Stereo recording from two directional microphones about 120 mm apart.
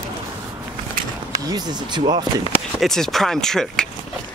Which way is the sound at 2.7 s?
5° left (ahead or behind).